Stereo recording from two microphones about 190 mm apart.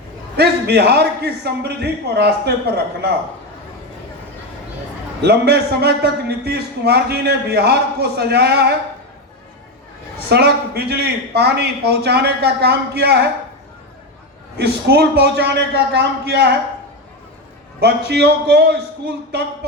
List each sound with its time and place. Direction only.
0.3 s a man's voice: 60° right (ahead or behind)
5.2 s a man's voice: 60° right (ahead or behind)
10.2 s a man's voice: 60° right (ahead or behind)
14.6 s a man's voice: 60° right (ahead or behind)
17.7 s a man's voice: 60° right (ahead or behind)